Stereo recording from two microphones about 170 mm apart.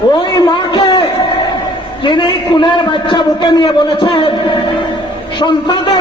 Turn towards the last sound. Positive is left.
turn(degrees=25)  # may be behind; listen again after turning